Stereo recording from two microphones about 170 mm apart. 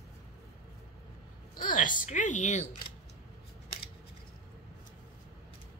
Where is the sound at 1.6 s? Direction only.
55° left (ahead or behind).